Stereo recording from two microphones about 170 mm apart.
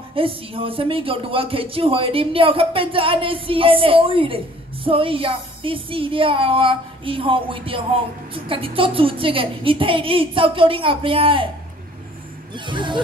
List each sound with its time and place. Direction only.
0.1 s speech: 35° right (ahead or behind)
12.5 s speech: 30° right (ahead or behind)